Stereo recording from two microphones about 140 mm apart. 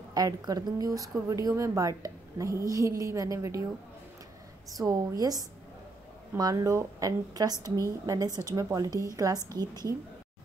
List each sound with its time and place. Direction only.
0.1 s a woman's voice: 25° right (ahead or behind)
4.6 s a woman's voice: 25° right (ahead or behind)